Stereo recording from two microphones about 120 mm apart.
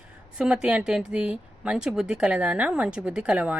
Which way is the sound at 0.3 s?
5° right (ahead or behind).